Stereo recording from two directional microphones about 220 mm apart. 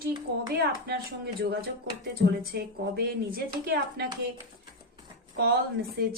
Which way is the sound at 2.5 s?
45° right (ahead or behind).